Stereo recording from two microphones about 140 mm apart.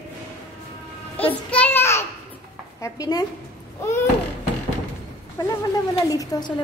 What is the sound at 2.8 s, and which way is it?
Speech, 25° left (ahead or behind).